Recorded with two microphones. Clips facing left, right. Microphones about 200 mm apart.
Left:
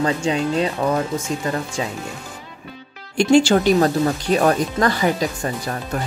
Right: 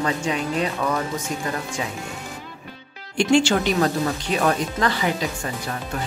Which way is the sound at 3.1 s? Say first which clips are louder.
Left 4 dB; 35° left (ahead or behind).